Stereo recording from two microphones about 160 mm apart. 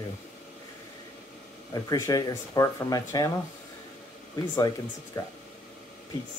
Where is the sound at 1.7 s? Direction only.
20° left (ahead or behind).